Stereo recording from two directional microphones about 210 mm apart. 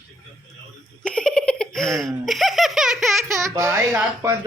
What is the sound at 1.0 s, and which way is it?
Laughter, 5° left (ahead or behind).